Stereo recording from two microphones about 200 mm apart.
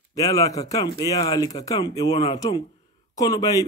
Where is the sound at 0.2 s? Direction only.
15° left (ahead or behind).